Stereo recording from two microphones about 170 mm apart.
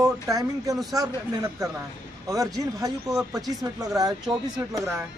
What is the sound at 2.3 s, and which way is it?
Speech, 20° right (ahead or behind).